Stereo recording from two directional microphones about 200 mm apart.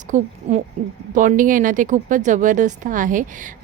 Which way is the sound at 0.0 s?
35° right (ahead or behind).